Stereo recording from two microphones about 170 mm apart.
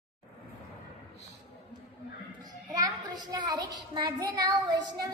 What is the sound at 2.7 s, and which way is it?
A child's voice, 25° right (ahead or behind).